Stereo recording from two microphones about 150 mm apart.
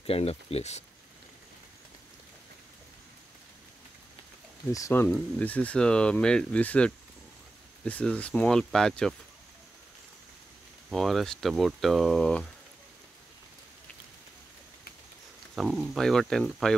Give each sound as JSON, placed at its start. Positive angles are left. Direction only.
{"t": 0.0, "sound": "speech", "side_deg": 40}
{"t": 4.7, "sound": "speech", "side_deg": 20}
{"t": 10.9, "sound": "speech", "side_deg": 0}
{"t": 15.5, "sound": "speech", "side_deg": 0}